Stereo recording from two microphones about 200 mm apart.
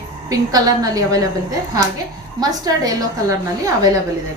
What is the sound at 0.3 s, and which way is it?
Speech, 20° right (ahead or behind).